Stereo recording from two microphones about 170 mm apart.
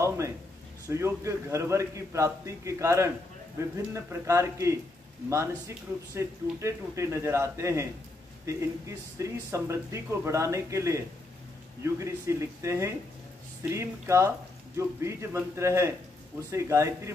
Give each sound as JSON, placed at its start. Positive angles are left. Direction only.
{"t": 0.8, "sound": "speech", "side_deg": -15}